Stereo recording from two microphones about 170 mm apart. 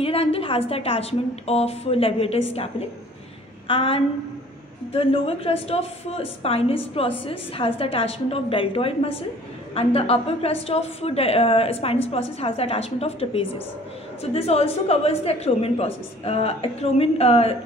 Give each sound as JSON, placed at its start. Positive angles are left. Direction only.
{"t": 0.0, "sound": "a woman's voice", "side_deg": 35}
{"t": 3.6, "sound": "a woman's voice", "side_deg": 30}